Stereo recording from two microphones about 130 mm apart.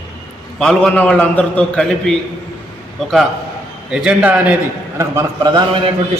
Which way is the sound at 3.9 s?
5° right (ahead or behind).